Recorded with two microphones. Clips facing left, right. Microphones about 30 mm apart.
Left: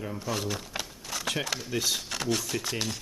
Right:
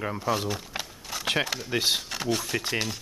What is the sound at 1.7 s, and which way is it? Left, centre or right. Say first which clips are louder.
Speech: right 4 dB; right.